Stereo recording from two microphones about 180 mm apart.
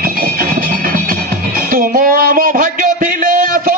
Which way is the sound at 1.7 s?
50° right (ahead or behind).